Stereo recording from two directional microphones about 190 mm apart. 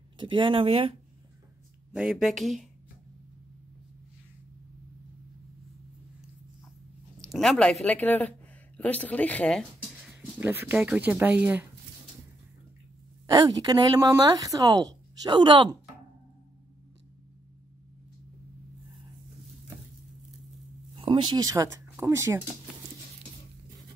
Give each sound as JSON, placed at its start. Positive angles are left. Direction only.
{"t": 0.2, "sound": "speech", "side_deg": -25}
{"t": 2.0, "sound": "speech", "side_deg": -5}
{"t": 7.2, "sound": "speech", "side_deg": 0}
{"t": 10.0, "sound": "speech", "side_deg": -5}
{"t": 13.3, "sound": "speech", "side_deg": -20}
{"t": 20.9, "sound": "speech", "side_deg": -30}